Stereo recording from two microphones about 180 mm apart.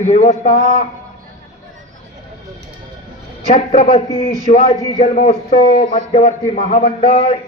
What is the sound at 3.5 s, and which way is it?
A man's voice, 40° left (ahead or behind).